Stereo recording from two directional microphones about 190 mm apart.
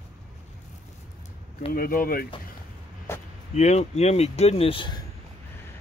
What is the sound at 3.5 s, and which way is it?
Speech, 35° left (ahead or behind).